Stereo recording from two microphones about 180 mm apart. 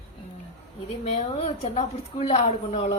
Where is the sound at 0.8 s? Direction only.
35° left (ahead or behind).